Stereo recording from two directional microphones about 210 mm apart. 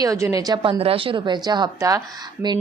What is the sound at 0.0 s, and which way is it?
A woman's voice, 15° right (ahead or behind).